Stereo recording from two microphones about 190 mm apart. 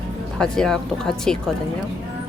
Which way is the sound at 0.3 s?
5° left (ahead or behind).